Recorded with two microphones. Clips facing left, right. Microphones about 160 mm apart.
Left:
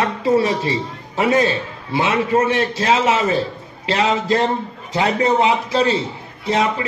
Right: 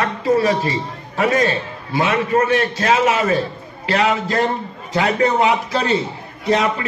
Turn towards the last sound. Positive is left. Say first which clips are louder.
# right 1 dB
turn(degrees=30)  # may be behind; listen again after turning